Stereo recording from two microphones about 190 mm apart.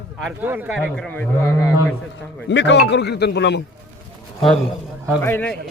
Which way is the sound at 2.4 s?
65° left (ahead or behind).